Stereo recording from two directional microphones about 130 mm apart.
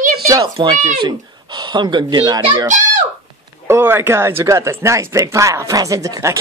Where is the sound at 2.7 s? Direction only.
70° right (ahead or behind).